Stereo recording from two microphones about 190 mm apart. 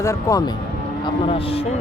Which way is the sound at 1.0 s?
30° left (ahead or behind).